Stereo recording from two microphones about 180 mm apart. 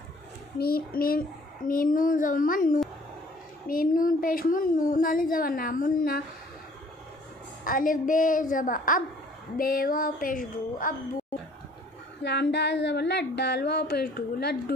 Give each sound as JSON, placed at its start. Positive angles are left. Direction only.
{"t": 0.6, "sound": "child singing", "side_deg": 55}
{"t": 1.7, "sound": "speech", "side_deg": 50}
{"t": 7.6, "sound": "speech", "side_deg": 50}
{"t": 12.2, "sound": "speech", "side_deg": 70}